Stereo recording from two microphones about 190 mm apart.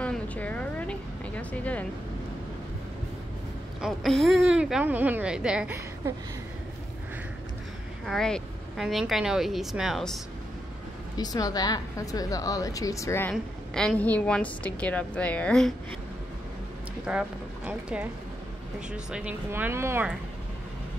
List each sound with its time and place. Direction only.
0.0 s a sound: 5° left (ahead or behind)
3.8 s speech: centre (ahead or behind)
8.0 s speech: centre (ahead or behind)
11.1 s a woman's voice: 20° left (ahead or behind); by 15.7 s 5° left (ahead or behind)
17.0 s speech: 5° right (ahead or behind)